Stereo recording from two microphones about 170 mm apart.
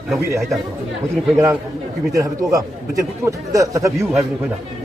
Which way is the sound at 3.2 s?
20° right (ahead or behind).